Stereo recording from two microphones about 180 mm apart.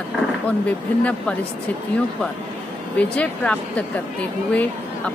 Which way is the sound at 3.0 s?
5° left (ahead or behind).